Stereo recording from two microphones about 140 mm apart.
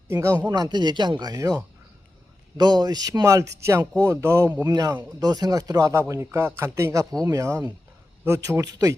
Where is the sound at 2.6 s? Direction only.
30° right (ahead or behind).